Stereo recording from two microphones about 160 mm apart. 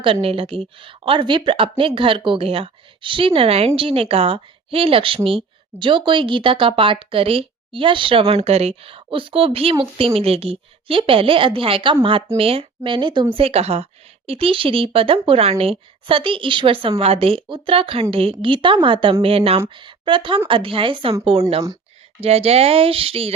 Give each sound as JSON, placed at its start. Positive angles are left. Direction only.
{"t": 0.0, "sound": "speech", "side_deg": -35}
{"t": 22.2, "sound": "speech", "side_deg": -40}